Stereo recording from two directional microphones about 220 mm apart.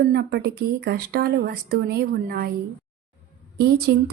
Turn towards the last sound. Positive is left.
turn(degrees=-45)  # may be behind; listen again after turning